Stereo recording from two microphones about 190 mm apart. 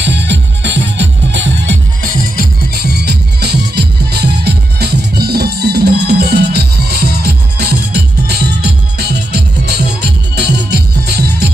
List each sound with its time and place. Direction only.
0.0 s music: 65° right (ahead or behind)
2.7 s music: 55° right (ahead or behind)